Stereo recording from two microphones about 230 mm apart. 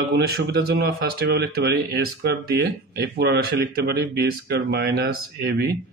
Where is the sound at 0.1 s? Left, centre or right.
Right.